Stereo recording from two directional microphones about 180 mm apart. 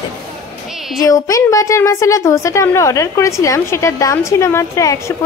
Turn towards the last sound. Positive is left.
turn(degrees=15)  # may be behind; listen again after turning